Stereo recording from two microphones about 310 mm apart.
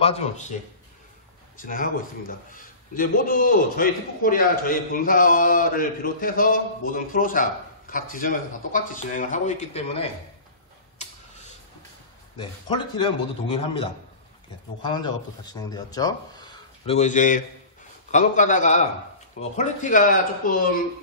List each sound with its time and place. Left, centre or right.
0.0 s a man's voice: centre
1.6 s a man's voice: left
12.4 s a man's voice: centre